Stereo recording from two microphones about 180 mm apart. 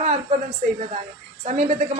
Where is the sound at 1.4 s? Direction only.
35° right (ahead or behind).